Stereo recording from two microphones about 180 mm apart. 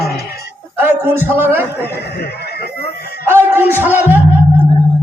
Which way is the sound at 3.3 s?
10° right (ahead or behind).